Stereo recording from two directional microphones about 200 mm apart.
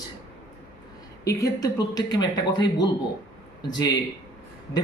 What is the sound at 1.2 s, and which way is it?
A man's voice, 15° left (ahead or behind).